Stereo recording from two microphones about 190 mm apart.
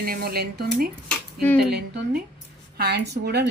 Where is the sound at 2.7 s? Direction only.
55° right (ahead or behind).